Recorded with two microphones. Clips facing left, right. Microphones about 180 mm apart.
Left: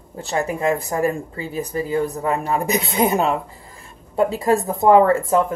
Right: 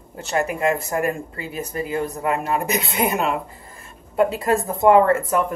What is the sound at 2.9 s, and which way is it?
Speech, 30° left (ahead or behind).